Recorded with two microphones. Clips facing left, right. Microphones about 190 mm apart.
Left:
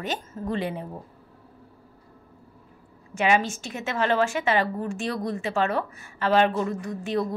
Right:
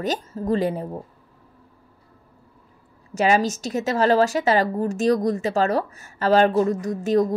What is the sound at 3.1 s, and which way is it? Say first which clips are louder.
A woman's voice: right 3 dB; 40° right (ahead or behind).